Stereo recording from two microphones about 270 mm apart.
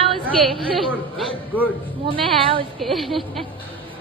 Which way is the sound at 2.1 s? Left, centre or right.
Centre.